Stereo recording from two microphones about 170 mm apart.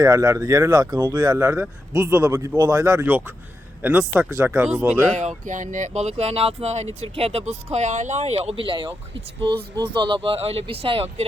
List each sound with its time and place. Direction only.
0.0 s speech: 20° right (ahead or behind)
5.5 s speech: 50° right (ahead or behind); by 8.9 s 30° right (ahead or behind)
9.9 s speech: 30° right (ahead or behind)